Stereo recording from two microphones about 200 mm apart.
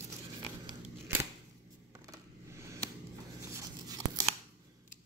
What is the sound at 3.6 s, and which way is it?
Tearing, 15° right (ahead or behind).